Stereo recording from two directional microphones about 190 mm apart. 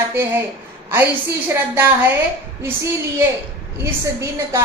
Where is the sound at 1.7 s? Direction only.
10° right (ahead or behind).